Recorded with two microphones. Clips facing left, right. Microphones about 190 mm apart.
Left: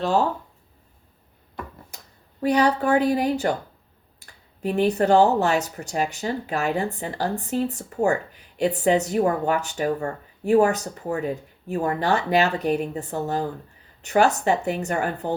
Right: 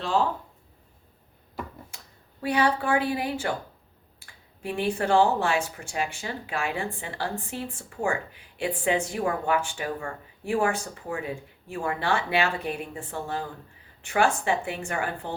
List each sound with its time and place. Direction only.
0.0 s speech: 40° left (ahead or behind)
2.4 s speech: 40° left (ahead or behind)